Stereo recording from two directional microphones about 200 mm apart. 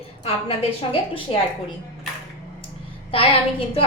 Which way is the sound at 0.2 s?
30° left (ahead or behind).